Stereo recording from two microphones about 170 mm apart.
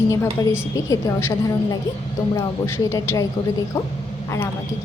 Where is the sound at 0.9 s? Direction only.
20° left (ahead or behind).